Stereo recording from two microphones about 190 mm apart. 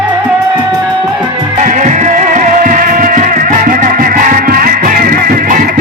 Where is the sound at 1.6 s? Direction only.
40° right (ahead or behind).